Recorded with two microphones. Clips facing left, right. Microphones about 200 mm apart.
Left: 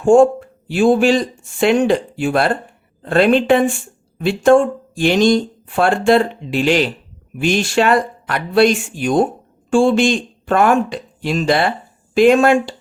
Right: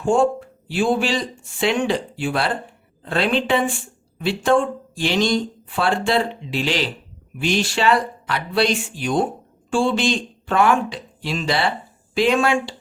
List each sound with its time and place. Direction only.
0.0 s speech: 45° left (ahead or behind)